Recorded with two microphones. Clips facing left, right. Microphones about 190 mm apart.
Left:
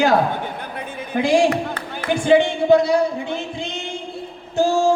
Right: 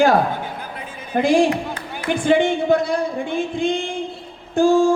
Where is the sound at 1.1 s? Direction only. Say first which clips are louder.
Right 1 dB; 55° right (ahead or behind).